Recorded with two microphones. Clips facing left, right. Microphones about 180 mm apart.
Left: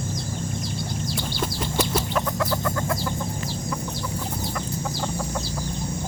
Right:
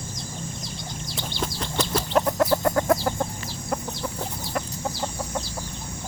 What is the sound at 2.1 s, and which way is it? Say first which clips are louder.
Chicken: right 4 dB; 35° right (ahead or behind).